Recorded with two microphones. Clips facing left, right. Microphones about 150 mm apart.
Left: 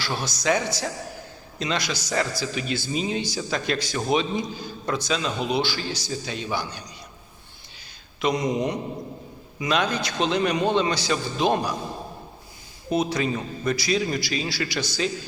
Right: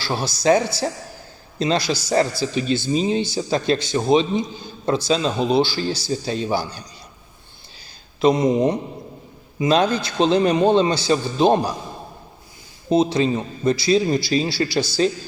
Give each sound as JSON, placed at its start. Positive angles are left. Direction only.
{"t": 0.0, "sound": "a man's voice", "side_deg": -30}
{"t": 8.2, "sound": "a man's voice", "side_deg": -30}
{"t": 12.9, "sound": "a man's voice", "side_deg": -25}